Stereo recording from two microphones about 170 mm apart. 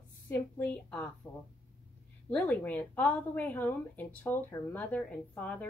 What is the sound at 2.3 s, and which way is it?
A woman's voice, 10° left (ahead or behind).